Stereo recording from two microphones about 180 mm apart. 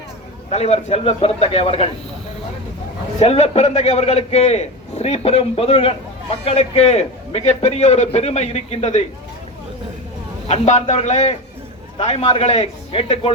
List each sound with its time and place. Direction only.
0.5 s a man's voice: 35° left (ahead or behind)
3.2 s a man's voice: 35° left (ahead or behind)
10.5 s a man's voice: 40° left (ahead or behind)